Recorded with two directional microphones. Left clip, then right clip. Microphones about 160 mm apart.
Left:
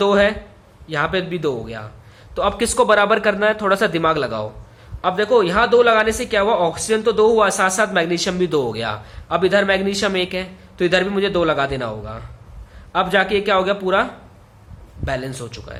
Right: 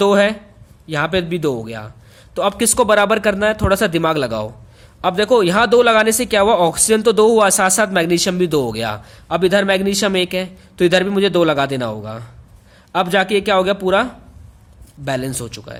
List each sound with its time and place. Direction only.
0.0 s speech: 50° right (ahead or behind)
4.9 s speech: 55° right (ahead or behind)